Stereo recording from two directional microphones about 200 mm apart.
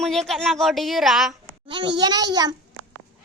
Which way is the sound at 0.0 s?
Centre (ahead or behind).